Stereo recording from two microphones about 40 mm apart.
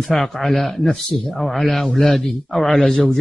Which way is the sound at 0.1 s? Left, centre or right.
Centre.